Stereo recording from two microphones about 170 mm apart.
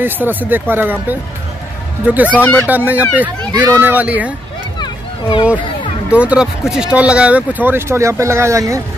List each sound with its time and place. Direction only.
0.0 s speech: 10° right (ahead or behind)
2.3 s speech: 10° left (ahead or behind)
2.7 s speech: 10° right (ahead or behind)
4.7 s a sound: 25° left (ahead or behind)
6.0 s speech: 5° right (ahead or behind)